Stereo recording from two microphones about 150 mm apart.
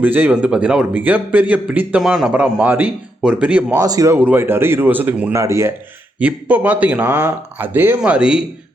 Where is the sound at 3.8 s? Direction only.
25° right (ahead or behind).